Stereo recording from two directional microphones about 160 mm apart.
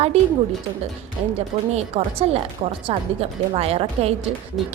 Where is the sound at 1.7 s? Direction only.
40° right (ahead or behind).